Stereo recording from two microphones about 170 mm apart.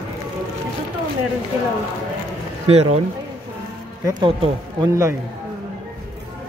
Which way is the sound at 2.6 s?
40° right (ahead or behind).